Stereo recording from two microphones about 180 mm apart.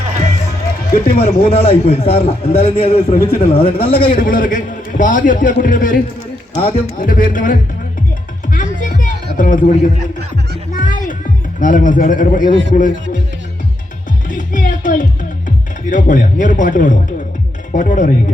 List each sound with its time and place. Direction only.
0.9 s speech: 55° left (ahead or behind)
1.5 s a man's voice: 35° left (ahead or behind)
4.2 s a man's voice: 50° left (ahead or behind)
6.5 s speech: 30° left (ahead or behind)
7.0 s a man's voice: 50° left (ahead or behind)
8.5 s music: 45° left (ahead or behind)
11.6 s a man's voice: 45° left (ahead or behind)
14.3 s music: 45° left (ahead or behind)
17.7 s speech: 45° left (ahead or behind)